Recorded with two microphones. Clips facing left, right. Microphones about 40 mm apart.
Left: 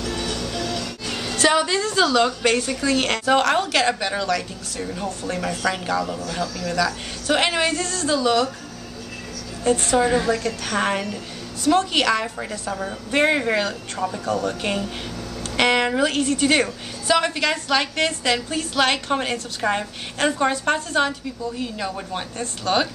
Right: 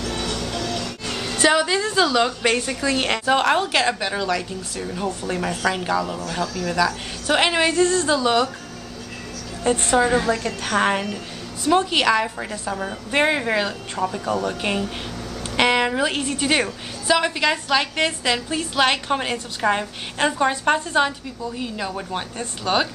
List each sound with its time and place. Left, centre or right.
0.1 s music: right
1.5 s a woman's voice: centre; by 8.5 s right
9.6 s speech: right
9.9 s a woman's voice: centre